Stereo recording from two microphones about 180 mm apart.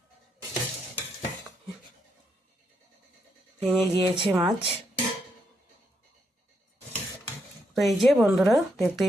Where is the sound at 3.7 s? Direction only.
30° right (ahead or behind).